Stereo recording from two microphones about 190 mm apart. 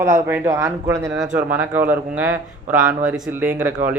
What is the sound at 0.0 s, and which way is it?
Speech, 10° right (ahead or behind).